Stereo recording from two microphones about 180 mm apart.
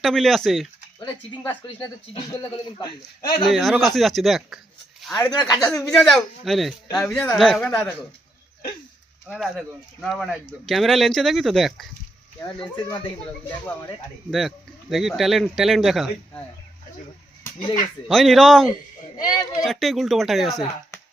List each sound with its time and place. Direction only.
0.0 s speech: centre (ahead or behind)
1.6 s speech: 25° left (ahead or behind)
3.4 s speech: centre (ahead or behind)
5.1 s speech: 20° left (ahead or behind)
5.5 s speech: centre (ahead or behind)
7.0 s speech: 15° left (ahead or behind)
7.3 s speech: centre (ahead or behind)
9.3 s speech: centre (ahead or behind)
12.5 s speech: 25° left (ahead or behind)
14.3 s speech: centre (ahead or behind)
17.4 s a sound: 25° left (ahead or behind)
18.1 s speech: centre (ahead or behind)
19.1 s speech: 25° left (ahead or behind)
19.6 s speech: centre (ahead or behind)